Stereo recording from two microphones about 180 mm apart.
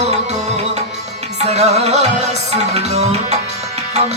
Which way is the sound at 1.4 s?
35° right (ahead or behind).